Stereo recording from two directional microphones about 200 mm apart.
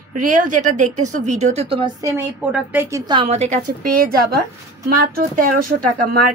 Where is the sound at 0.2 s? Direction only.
40° right (ahead or behind).